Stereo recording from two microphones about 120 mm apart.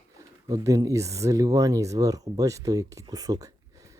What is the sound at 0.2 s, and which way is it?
Speech, 25° right (ahead or behind).